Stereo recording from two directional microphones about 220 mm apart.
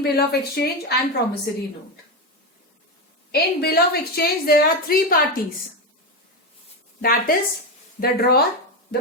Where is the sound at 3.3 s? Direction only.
45° left (ahead or behind).